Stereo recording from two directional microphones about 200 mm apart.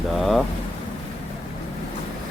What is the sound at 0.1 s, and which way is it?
Rain, centre (ahead or behind).